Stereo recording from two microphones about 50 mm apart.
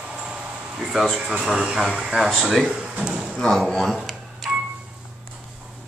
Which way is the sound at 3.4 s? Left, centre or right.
Centre.